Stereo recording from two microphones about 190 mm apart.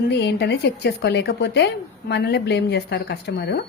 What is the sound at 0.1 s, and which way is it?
A woman's voice, 65° left (ahead or behind).